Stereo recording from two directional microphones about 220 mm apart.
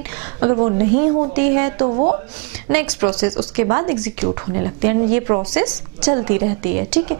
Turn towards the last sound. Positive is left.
turn(degrees=-10)  # may be behind; listen again after turning